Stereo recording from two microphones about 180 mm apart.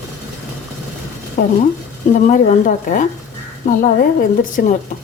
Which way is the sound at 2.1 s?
45° left (ahead or behind).